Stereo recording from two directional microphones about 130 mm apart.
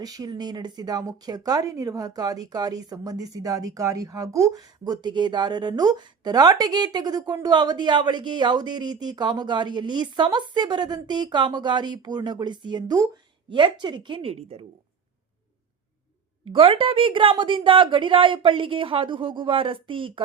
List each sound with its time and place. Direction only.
0.0 s speech: 30° right (ahead or behind); by 14.6 s 50° right (ahead or behind)
16.5 s speech: 40° right (ahead or behind)